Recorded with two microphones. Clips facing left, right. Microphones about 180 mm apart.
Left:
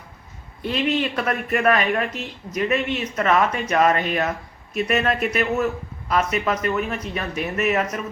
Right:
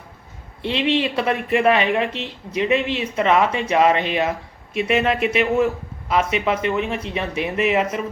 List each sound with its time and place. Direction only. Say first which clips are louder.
0.6 s speech: right 2 dB; 30° right (ahead or behind)